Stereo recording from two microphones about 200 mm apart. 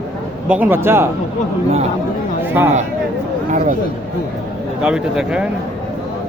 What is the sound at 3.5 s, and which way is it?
Speech, 35° right (ahead or behind).